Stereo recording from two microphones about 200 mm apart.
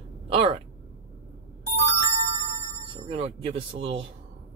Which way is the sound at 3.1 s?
30° right (ahead or behind).